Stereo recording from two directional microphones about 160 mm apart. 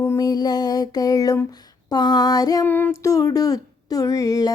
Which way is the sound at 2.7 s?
15° left (ahead or behind).